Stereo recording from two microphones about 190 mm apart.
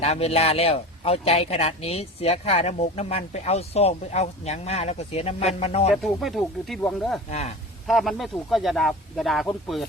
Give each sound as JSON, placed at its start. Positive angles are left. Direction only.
{"t": 0.0, "sound": "a man's voice", "side_deg": 35}
{"t": 5.9, "sound": "speech", "side_deg": 0}
{"t": 7.3, "sound": "a man's voice", "side_deg": 35}
{"t": 7.9, "sound": "speech", "side_deg": 0}